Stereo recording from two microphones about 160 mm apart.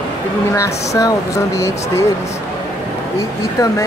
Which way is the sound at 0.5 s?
20° left (ahead or behind).